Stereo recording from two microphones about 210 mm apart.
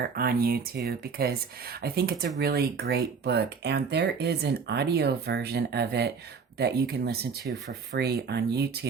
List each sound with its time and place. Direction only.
0.2 s speech: 45° right (ahead or behind)